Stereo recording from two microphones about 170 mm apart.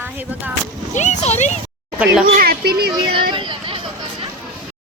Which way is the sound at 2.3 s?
60° right (ahead or behind).